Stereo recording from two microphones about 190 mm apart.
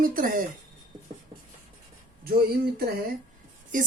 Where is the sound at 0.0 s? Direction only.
50° right (ahead or behind).